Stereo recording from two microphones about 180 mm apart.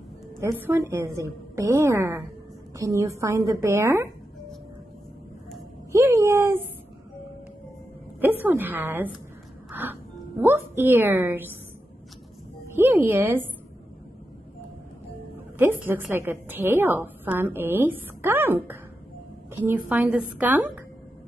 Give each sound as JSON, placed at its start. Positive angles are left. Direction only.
{"t": 0.4, "sound": "a woman's voice", "side_deg": -15}
{"t": 5.9, "sound": "a sound", "side_deg": -15}
{"t": 8.2, "sound": "a woman's voice", "side_deg": -10}
{"t": 9.7, "sound": "music", "side_deg": -10}
{"t": 10.4, "sound": "a woman's voice", "side_deg": -15}
{"t": 12.6, "sound": "a woman's voice", "side_deg": -15}
{"t": 15.3, "sound": "a woman's voice", "side_deg": -10}